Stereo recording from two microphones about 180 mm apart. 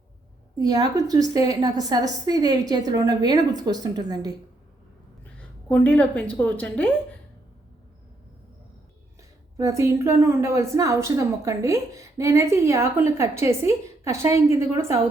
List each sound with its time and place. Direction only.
0.6 s a woman's voice: 20° right (ahead or behind)
5.4 s a woman's voice: 5° left (ahead or behind)
9.6 s a woman's voice: 15° right (ahead or behind)